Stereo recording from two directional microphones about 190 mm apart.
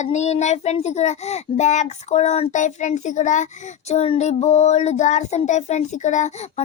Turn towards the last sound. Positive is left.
turn(degrees=35)  # may be behind; listen again after turning